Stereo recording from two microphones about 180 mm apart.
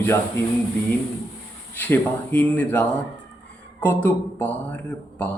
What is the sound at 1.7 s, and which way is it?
Speech, 10° left (ahead or behind).